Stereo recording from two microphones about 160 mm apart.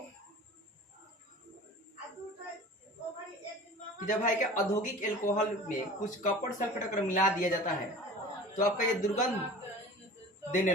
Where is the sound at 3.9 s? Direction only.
55° left (ahead or behind).